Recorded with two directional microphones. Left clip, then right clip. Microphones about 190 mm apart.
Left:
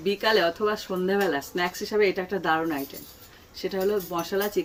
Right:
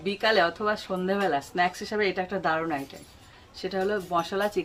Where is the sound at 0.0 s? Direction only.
15° right (ahead or behind).